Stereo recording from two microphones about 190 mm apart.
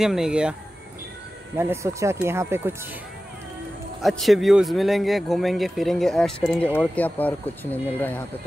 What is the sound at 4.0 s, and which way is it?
Speech, centre (ahead or behind).